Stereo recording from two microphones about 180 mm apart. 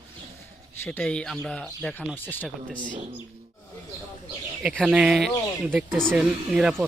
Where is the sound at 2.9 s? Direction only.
45° right (ahead or behind).